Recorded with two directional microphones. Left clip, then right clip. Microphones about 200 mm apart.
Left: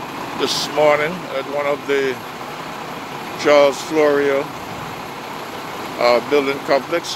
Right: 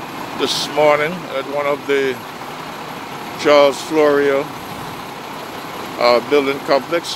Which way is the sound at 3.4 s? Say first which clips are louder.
Right 1 dB; 15° right (ahead or behind).